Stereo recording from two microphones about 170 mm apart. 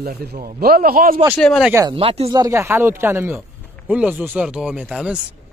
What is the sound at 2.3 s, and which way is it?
Speech, 20° right (ahead or behind).